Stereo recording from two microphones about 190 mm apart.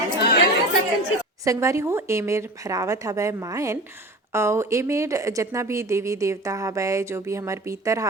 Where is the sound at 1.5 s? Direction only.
15° right (ahead or behind).